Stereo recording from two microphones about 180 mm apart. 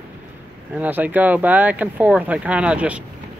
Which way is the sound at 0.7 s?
10° right (ahead or behind).